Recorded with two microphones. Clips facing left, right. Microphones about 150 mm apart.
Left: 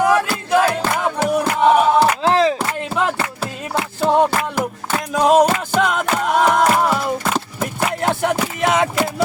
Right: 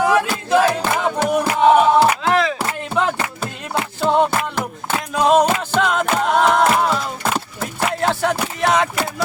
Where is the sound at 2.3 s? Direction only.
35° left (ahead or behind).